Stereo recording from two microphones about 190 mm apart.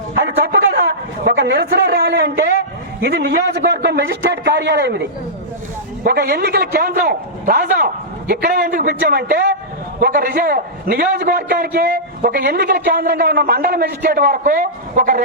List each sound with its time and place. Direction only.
0.2 s a sound: 55° right (ahead or behind)
3.0 s a man's voice: 60° right (ahead or behind)
6.1 s a man's voice: 55° right (ahead or behind)